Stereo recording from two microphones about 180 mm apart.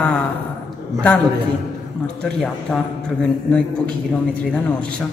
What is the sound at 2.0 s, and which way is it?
Speech, 5° left (ahead or behind).